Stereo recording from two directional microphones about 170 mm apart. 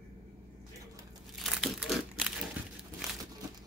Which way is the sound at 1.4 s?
Centre (ahead or behind).